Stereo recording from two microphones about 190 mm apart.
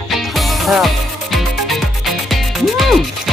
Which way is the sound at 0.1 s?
Centre (ahead or behind).